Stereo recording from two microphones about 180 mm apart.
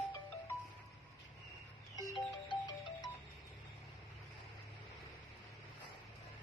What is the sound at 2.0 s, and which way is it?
Music, 25° left (ahead or behind).